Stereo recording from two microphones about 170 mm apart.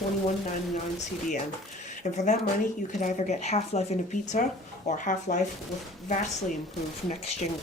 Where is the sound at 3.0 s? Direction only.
45° left (ahead or behind).